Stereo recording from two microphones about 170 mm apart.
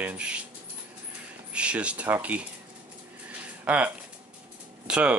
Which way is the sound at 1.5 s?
5° right (ahead or behind).